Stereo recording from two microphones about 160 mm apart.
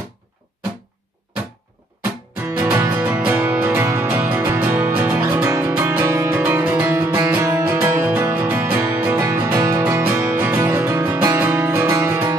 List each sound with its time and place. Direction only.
2.4 s music: 15° right (ahead or behind)